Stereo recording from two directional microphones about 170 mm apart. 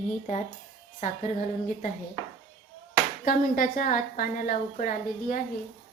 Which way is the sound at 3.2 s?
55° left (ahead or behind).